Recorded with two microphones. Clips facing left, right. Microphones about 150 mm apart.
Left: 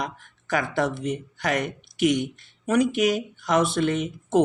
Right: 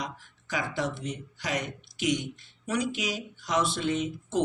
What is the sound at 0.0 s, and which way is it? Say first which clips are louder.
Speech: left 5 dB; 55° left (ahead or behind).